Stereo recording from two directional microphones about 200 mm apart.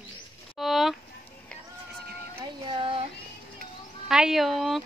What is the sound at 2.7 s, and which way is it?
Speech, 25° right (ahead or behind).